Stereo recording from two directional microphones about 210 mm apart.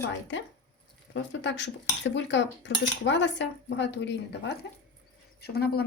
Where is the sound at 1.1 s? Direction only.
60° left (ahead or behind).